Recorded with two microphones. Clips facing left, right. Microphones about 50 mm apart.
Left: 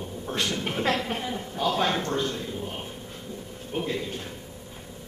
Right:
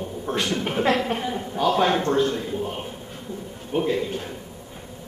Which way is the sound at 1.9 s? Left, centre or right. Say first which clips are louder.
Right 6 dB; right.